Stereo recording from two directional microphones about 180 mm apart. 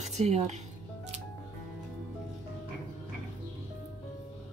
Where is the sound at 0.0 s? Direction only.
35° right (ahead or behind).